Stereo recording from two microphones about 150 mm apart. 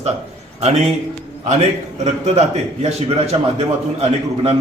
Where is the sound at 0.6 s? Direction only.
45° right (ahead or behind).